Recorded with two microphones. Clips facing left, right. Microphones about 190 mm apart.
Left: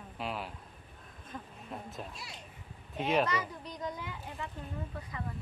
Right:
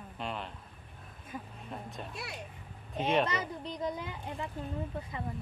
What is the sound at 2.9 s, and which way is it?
Speech, centre (ahead or behind).